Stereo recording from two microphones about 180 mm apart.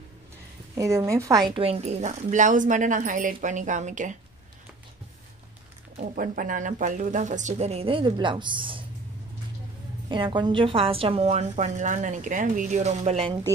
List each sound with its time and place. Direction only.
0.7 s a woman's voice: 15° right (ahead or behind)
1.5 s a woman's voice: 30° right (ahead or behind)
5.9 s a woman's voice: 50° right (ahead or behind); by 8.8 s 25° right (ahead or behind)
10.0 s a woman's voice: 25° right (ahead or behind)